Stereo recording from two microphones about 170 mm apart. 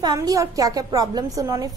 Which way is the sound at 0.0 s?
20° right (ahead or behind).